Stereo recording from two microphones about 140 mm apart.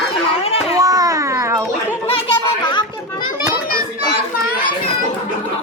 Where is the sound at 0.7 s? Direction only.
25° right (ahead or behind).